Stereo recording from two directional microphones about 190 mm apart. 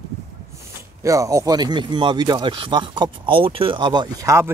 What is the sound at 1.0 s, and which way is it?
Speech, 15° right (ahead or behind).